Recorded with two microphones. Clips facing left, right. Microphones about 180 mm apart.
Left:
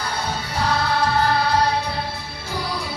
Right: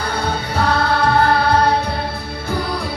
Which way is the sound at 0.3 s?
60° right (ahead or behind).